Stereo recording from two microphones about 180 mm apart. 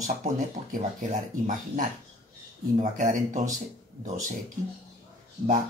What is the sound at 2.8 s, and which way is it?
Speech, 45° right (ahead or behind).